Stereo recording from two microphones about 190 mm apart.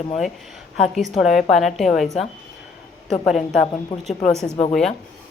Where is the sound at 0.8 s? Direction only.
Centre (ahead or behind).